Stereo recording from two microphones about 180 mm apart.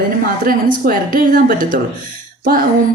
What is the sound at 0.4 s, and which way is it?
A woman's voice, 50° right (ahead or behind).